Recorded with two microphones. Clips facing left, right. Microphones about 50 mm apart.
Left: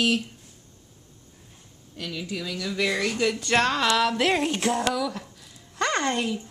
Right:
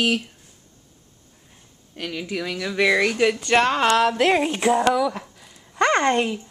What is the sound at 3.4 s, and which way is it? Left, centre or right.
Speech, right.